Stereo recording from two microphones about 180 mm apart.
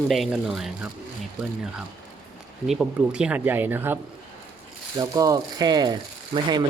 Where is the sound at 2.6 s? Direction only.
5° right (ahead or behind).